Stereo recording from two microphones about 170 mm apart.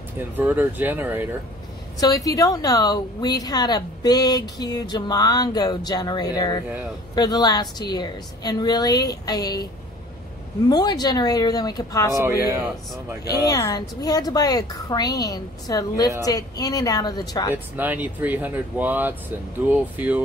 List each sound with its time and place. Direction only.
0.2 s speech: 10° right (ahead or behind)
2.0 s speech: 20° left (ahead or behind)
10.7 s speech: 25° left (ahead or behind)
12.1 s speech: 15° right (ahead or behind)
13.2 s speech: 20° left (ahead or behind)
17.7 s speech: 10° right (ahead or behind)